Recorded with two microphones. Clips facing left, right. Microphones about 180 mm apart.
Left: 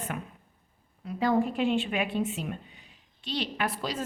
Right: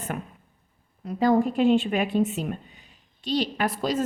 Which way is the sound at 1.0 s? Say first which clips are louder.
Right 5 dB; 40° right (ahead or behind).